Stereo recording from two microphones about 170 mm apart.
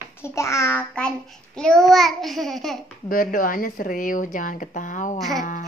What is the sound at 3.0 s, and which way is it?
Speech, 55° left (ahead or behind).